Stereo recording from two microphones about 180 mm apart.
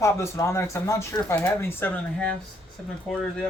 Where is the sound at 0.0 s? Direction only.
15° left (ahead or behind).